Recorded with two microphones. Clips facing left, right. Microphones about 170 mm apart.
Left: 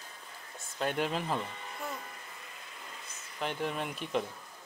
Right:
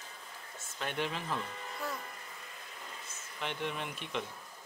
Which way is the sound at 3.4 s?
40° left (ahead or behind).